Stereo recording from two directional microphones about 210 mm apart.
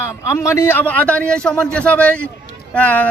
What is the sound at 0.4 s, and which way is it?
A man's voice, 10° left (ahead or behind).